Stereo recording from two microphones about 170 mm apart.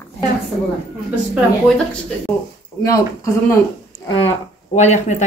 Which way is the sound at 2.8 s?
20° left (ahead or behind).